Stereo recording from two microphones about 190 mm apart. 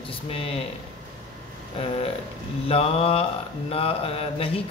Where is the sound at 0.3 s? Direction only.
30° left (ahead or behind).